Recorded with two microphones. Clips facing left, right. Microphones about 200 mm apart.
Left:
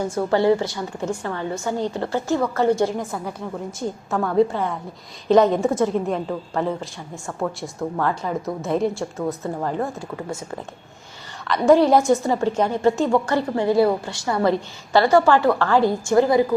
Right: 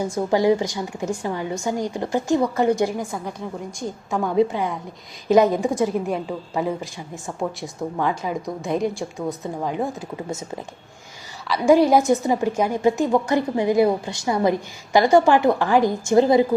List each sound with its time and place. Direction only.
0.0 s a woman's voice: 15° right (ahead or behind)
3.0 s a woman's voice: centre (ahead or behind)
4.1 s a woman's voice: 10° right (ahead or behind)
8.0 s a woman's voice: 15° right (ahead or behind)
8.4 s a woman's voice: centre (ahead or behind)
11.4 s a woman's voice: 5° right (ahead or behind); by 16.6 s 20° right (ahead or behind)